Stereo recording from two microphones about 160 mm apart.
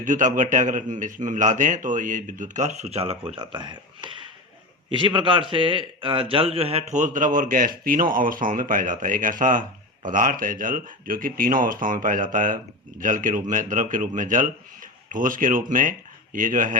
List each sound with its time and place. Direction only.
0.0 s a man's voice: 55° right (ahead or behind)